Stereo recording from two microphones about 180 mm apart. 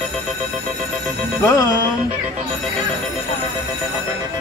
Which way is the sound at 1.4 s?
15° left (ahead or behind).